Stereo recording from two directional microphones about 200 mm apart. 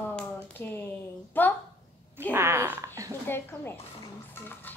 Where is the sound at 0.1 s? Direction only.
5° left (ahead or behind).